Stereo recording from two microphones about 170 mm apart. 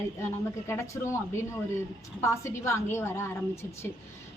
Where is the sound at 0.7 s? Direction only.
15° left (ahead or behind).